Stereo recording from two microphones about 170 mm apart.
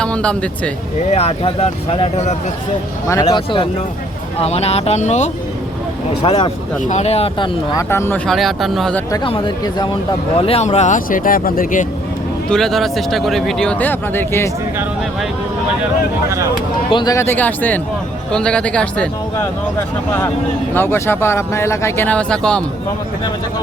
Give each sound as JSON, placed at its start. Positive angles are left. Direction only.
{"t": 0.0, "sound": "speech", "side_deg": 5}
{"t": 1.1, "sound": "speech", "side_deg": 35}
{"t": 3.1, "sound": "speech", "side_deg": 25}
{"t": 8.3, "sound": "speech", "side_deg": 0}
{"t": 9.1, "sound": "speech", "side_deg": 30}
{"t": 12.5, "sound": "speech", "side_deg": 0}
{"t": 16.9, "sound": "speech", "side_deg": 25}
{"t": 20.7, "sound": "speech", "side_deg": 15}